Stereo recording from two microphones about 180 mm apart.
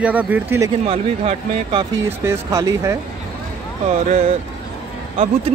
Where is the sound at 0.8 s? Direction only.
30° right (ahead or behind).